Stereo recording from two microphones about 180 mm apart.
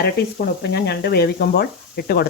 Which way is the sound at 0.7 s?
65° left (ahead or behind).